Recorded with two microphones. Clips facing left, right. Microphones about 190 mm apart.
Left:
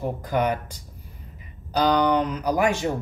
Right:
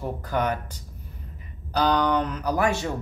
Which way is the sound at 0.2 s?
10° left (ahead or behind).